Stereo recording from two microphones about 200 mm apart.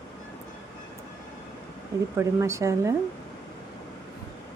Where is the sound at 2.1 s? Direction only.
15° right (ahead or behind).